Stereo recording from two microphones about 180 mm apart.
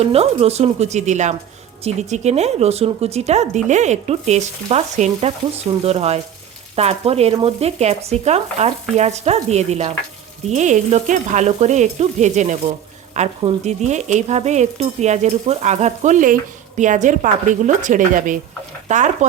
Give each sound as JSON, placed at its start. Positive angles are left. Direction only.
{"t": 0.0, "sound": "stir", "side_deg": -35}
{"t": 18.9, "sound": "speech", "side_deg": -40}